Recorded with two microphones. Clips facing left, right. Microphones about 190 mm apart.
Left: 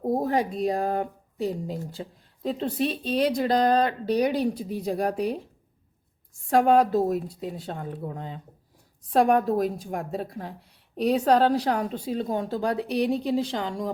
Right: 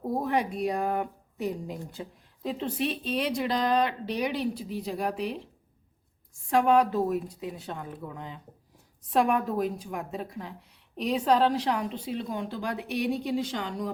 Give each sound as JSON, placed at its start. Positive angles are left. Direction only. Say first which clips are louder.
{"t": 0.0, "sound": "a sound", "louder": "left 4 dB", "side_deg": 40}
{"t": 0.6, "sound": "speech", "louder": "left 3 dB", "side_deg": 35}
{"t": 6.5, "sound": "speech", "louder": "left 3 dB", "side_deg": 40}
{"t": 12.5, "sound": "speech", "louder": "left 7 dB", "side_deg": 35}